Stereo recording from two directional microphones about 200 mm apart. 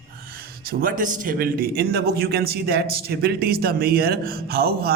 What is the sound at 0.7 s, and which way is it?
A man's voice, 45° right (ahead or behind).